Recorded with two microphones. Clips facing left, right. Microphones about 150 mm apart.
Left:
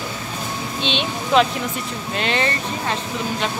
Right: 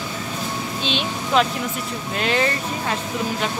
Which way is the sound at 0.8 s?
5° right (ahead or behind).